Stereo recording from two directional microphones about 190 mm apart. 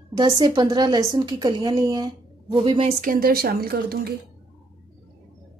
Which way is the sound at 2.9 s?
50° right (ahead or behind).